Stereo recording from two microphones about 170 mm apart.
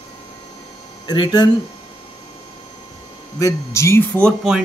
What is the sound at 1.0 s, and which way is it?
Speech, 25° left (ahead or behind).